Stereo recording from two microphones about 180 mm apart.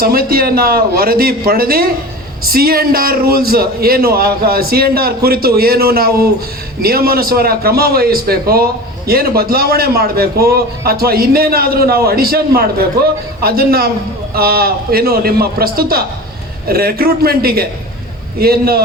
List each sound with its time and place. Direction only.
0.0 s a man's voice: 55° right (ahead or behind)